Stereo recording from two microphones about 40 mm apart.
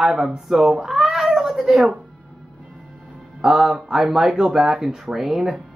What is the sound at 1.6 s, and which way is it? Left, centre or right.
Speech, centre.